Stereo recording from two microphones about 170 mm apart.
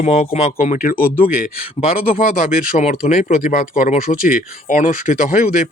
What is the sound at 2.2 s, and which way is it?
Speech, 55° left (ahead or behind).